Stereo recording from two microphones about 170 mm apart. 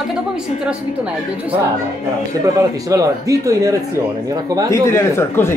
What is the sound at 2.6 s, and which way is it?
Speech, 20° right (ahead or behind).